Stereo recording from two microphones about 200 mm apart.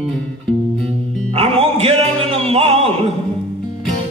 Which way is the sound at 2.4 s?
30° right (ahead or behind).